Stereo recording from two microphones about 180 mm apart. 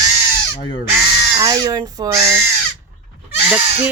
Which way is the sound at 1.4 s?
20° right (ahead or behind).